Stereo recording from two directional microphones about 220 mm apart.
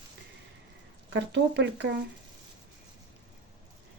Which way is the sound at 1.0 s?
50° right (ahead or behind).